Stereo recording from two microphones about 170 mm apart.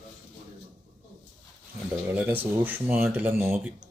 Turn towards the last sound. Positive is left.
turn(degrees=-10)  # may be behind; listen again after turning